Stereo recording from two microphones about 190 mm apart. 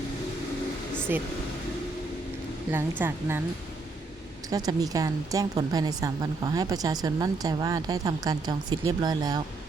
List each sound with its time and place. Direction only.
1.1 s a woman's voice: 10° right (ahead or behind)
2.7 s a woman's voice: 10° right (ahead or behind)
4.4 s a woman's voice: 20° right (ahead or behind)